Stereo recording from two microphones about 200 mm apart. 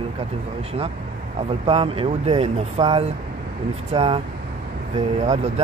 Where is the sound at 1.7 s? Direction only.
30° right (ahead or behind).